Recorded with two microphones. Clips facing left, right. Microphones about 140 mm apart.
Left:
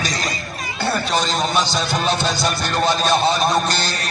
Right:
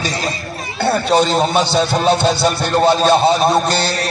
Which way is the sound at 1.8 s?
30° right (ahead or behind).